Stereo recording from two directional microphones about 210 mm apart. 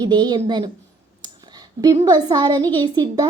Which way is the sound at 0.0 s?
20° right (ahead or behind).